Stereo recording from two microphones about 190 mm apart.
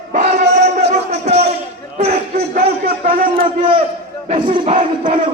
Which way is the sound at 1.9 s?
50° right (ahead or behind).